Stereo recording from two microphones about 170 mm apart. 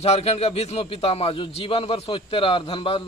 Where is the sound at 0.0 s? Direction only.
35° left (ahead or behind).